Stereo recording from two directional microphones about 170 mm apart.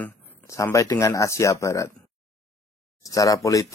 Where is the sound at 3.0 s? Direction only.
20° left (ahead or behind).